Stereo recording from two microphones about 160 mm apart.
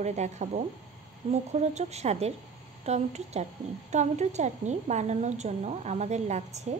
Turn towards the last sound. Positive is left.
turn(degrees=-45)  # may be behind; listen again after turning